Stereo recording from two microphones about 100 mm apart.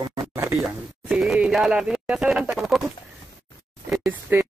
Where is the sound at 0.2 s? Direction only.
30° right (ahead or behind).